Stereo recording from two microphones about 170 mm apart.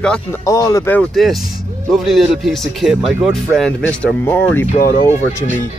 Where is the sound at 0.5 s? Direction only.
20° left (ahead or behind).